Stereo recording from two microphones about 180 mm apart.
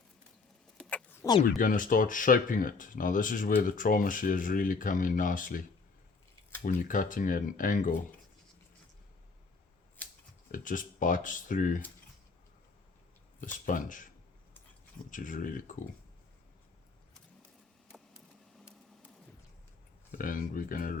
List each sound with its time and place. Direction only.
0.9 s a sound: 10° left (ahead or behind)
1.5 s speech: 50° left (ahead or behind)
10.5 s speech: 50° left (ahead or behind)
13.4 s speech: 45° left (ahead or behind)
15.1 s speech: 45° left (ahead or behind)
20.1 s speech: 50° left (ahead or behind)